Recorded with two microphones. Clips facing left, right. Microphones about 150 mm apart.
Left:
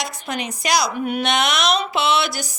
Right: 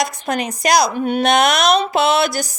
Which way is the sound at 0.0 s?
40° right (ahead or behind).